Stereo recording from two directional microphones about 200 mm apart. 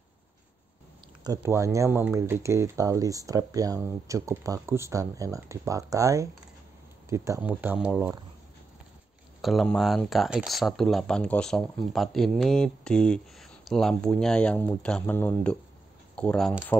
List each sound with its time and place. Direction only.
1.2 s speech: 15° right (ahead or behind)
9.4 s speech: centre (ahead or behind)